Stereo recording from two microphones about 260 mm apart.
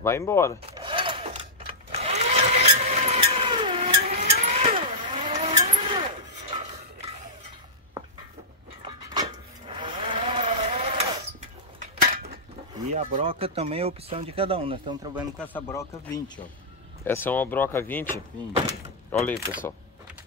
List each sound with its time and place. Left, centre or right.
0.0 s speech: centre
0.7 s sewing machine: centre
4.1 s vehicle: right
9.7 s a sound: centre
11.8 s cutlery: right
12.9 s speech: right
15.1 s speech: centre
15.5 s speech: centre